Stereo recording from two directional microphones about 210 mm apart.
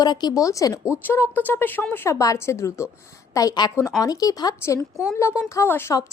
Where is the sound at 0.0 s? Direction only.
20° left (ahead or behind).